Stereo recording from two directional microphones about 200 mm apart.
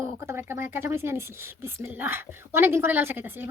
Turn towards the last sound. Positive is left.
turn(degrees=-10)  # may be behind; listen again after turning